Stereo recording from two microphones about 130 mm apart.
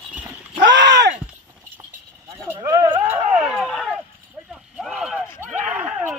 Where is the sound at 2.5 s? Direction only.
20° right (ahead or behind).